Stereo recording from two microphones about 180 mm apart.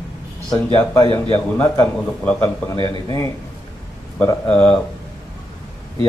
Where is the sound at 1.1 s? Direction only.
15° left (ahead or behind).